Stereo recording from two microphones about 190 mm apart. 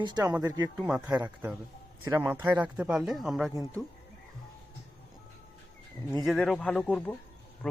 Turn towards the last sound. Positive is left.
turn(degrees=5)  # may be behind; listen again after turning